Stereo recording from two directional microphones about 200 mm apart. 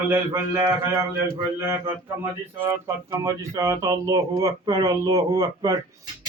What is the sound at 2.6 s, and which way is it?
Speech, 15° right (ahead or behind).